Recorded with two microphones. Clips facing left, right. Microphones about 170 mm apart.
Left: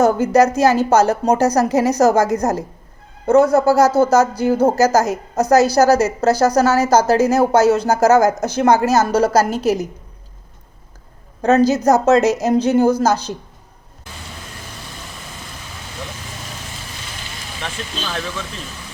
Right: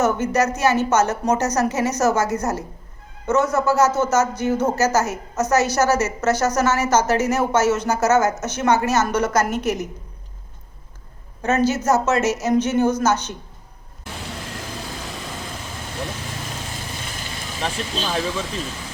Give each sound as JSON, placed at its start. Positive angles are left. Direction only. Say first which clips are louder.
{"t": 0.0, "sound": "a woman's voice", "louder": "left 6 dB", "side_deg": 35}
{"t": 3.2, "sound": "a woman's voice", "louder": "left 7 dB", "side_deg": 35}
{"t": 11.4, "sound": "a woman's voice", "louder": "left 5 dB", "side_deg": 35}
{"t": 17.6, "sound": "speech", "louder": "right 4 dB", "side_deg": -35}